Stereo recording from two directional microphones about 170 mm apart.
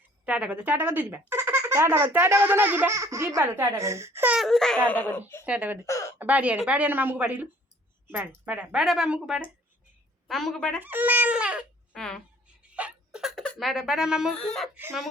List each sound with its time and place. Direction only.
0.3 s speech: 5° right (ahead or behind)
4.4 s speech: centre (ahead or behind)
5.5 s speech: 5° right (ahead or behind)
5.8 s a sound: 20° left (ahead or behind)
6.1 s speech: 10° right (ahead or behind)
10.8 s crying: 10° right (ahead or behind)
11.9 s speech: 5° left (ahead or behind)
12.7 s a sound: 5° right (ahead or behind)
14.3 s speech: 5° left (ahead or behind)